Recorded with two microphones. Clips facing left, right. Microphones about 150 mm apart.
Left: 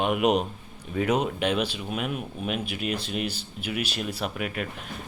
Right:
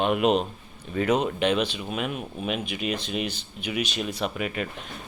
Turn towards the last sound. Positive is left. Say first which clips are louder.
# right 2 dB
turn(degrees=0)  # may be behind; listen again after turning